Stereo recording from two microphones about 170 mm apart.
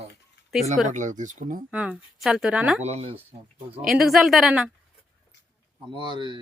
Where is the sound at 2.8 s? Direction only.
40° right (ahead or behind).